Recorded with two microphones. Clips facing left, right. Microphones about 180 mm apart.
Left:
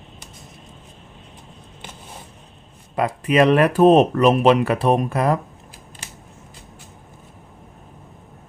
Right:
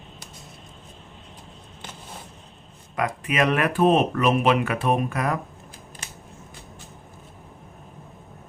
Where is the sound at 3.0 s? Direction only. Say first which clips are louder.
Left 7 dB; 35° left (ahead or behind).